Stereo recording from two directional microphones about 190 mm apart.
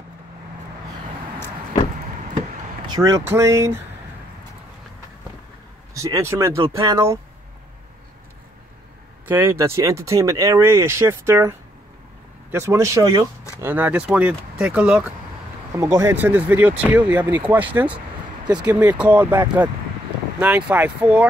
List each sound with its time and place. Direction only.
2.9 s speech: 15° right (ahead or behind)
5.9 s speech: 15° right (ahead or behind)
9.2 s speech: 10° right (ahead or behind)